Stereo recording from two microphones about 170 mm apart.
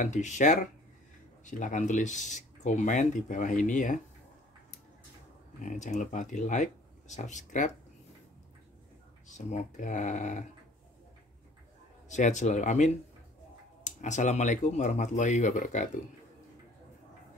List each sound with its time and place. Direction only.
0.0 s speech: 45° left (ahead or behind)
5.6 s speech: 45° left (ahead or behind)
9.3 s speech: 45° left (ahead or behind)
12.1 s speech: 45° left (ahead or behind)